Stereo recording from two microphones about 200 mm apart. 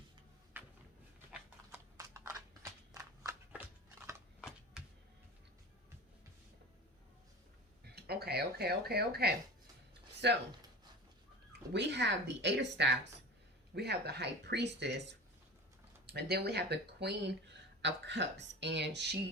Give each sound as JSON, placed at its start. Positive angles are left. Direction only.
{"t": 0.6, "sound": "a sound", "side_deg": -10}
{"t": 1.3, "sound": "clip-clop", "side_deg": -15}
{"t": 2.6, "sound": "a sound", "side_deg": -15}
{"t": 7.9, "sound": "speech", "side_deg": -55}
{"t": 11.7, "sound": "speech", "side_deg": -60}
{"t": 16.0, "sound": "speech", "side_deg": -55}